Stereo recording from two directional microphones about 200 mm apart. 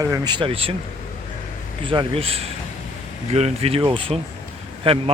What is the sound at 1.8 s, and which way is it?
Speech, 25° right (ahead or behind).